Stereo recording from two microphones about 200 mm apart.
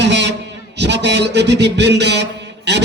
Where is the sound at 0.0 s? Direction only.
60° right (ahead or behind).